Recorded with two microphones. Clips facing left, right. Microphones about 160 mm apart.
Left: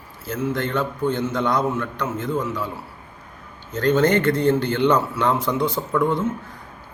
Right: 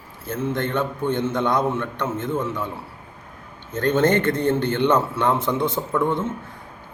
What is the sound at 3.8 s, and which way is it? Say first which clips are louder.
A man's voice: left 1 dB; 25° right (ahead or behind).